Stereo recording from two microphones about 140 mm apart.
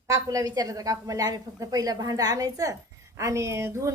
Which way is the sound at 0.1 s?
25° right (ahead or behind).